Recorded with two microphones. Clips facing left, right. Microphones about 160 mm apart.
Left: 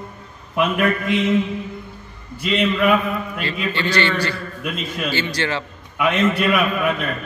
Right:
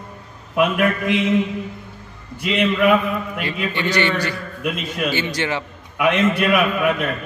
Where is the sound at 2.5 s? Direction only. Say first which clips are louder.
Right 1 dB; 10° right (ahead or behind).